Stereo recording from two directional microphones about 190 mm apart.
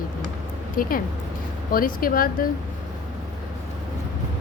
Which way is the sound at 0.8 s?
50° left (ahead or behind).